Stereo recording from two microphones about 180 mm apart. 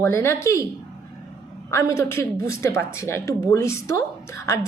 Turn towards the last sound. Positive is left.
turn(degrees=15)  # may be behind; listen again after turning